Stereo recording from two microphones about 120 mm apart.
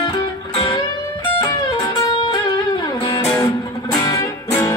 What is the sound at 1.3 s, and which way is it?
Music, 30° left (ahead or behind).